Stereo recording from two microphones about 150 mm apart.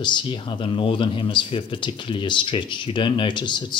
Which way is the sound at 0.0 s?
30° left (ahead or behind).